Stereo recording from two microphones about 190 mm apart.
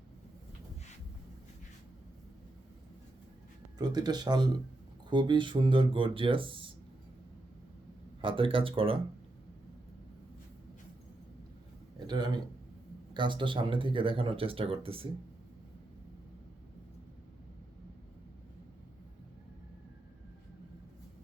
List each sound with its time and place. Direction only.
3.8 s speech: 20° right (ahead or behind)
8.2 s speech: 25° right (ahead or behind)
11.9 s a man's voice: 20° right (ahead or behind)